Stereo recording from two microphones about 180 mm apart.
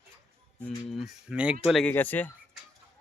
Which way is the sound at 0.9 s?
Centre (ahead or behind).